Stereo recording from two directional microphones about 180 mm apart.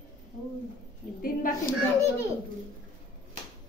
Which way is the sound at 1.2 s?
50° left (ahead or behind).